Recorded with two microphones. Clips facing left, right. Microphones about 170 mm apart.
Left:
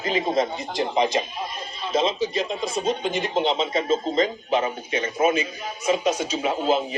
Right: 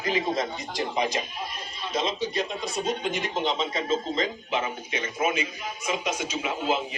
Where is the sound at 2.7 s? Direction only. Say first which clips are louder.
Left 4 dB; 30° left (ahead or behind).